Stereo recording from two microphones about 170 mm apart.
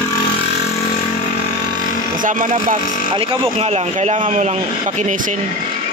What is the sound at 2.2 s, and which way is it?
Speech, 50° right (ahead or behind).